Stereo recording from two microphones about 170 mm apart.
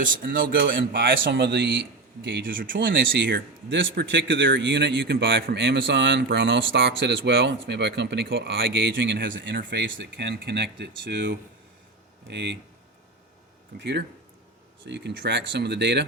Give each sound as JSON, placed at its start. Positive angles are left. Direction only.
{"t": 0.0, "sound": "a man's voice", "side_deg": -55}
{"t": 0.9, "sound": "speech", "side_deg": -90}
{"t": 2.5, "sound": "a man's voice", "side_deg": -55}
{"t": 2.7, "sound": "speech", "side_deg": -90}
{"t": 14.8, "sound": "speech", "side_deg": -90}